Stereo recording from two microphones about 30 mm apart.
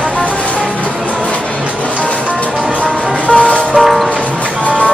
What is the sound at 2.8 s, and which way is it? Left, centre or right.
Music, left.